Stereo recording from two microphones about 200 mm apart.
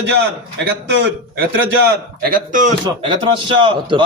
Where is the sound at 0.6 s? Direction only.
60° right (ahead or behind).